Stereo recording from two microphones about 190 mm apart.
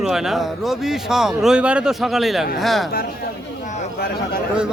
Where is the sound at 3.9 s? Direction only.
55° left (ahead or behind).